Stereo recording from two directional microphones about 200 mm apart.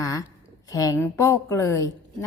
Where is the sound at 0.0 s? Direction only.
15° left (ahead or behind).